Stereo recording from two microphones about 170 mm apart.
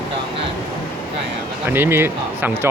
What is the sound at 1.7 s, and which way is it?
Speech, 15° right (ahead or behind).